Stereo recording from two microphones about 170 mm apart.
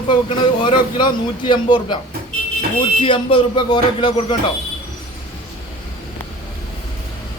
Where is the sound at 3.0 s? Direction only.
30° left (ahead or behind).